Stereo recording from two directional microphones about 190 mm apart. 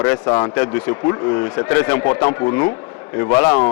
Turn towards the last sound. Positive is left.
turn(degrees=15)  # may be behind; listen again after turning